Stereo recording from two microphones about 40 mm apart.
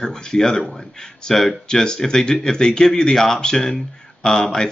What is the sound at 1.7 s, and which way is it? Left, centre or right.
Speech, centre.